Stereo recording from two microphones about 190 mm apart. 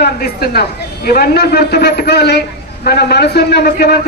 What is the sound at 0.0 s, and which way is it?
A man's voice, 55° left (ahead or behind).